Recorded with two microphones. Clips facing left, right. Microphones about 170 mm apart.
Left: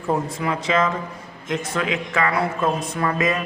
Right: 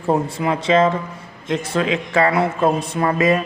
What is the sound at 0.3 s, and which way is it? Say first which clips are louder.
A man's voice: right 5 dB; 30° right (ahead or behind).